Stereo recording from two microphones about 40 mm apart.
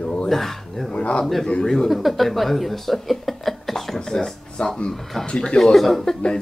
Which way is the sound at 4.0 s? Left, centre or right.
Centre.